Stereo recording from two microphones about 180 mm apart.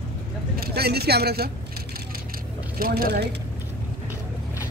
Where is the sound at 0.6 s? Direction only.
60° right (ahead or behind).